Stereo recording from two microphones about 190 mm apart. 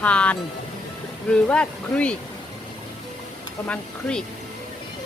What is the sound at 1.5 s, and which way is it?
Speech, 5° left (ahead or behind).